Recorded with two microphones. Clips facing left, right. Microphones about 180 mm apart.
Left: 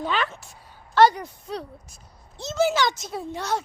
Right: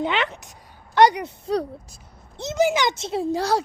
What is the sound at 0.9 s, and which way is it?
Speech, 20° right (ahead or behind).